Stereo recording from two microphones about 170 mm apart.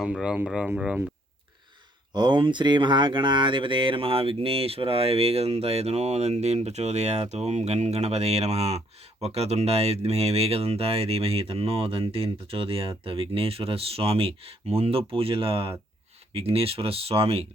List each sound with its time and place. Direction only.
0.0 s speech: 5° right (ahead or behind)
2.1 s speech: 25° right (ahead or behind)